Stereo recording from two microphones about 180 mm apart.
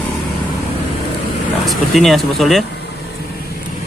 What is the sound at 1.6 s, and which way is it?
Speech, centre (ahead or behind).